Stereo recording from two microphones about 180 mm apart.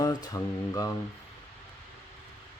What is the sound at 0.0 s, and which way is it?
Mantra, 20° left (ahead or behind).